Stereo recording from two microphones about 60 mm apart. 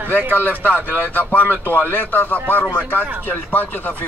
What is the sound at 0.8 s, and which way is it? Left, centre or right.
Speech, left.